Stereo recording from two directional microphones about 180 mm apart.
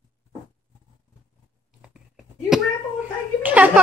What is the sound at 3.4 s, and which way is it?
Speech, 10° right (ahead or behind).